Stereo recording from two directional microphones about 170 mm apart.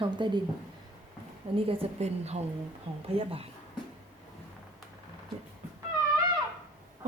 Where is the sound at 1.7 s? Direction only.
35° right (ahead or behind).